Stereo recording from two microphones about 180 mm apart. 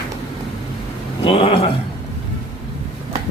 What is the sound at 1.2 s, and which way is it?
Speech, 30° left (ahead or behind).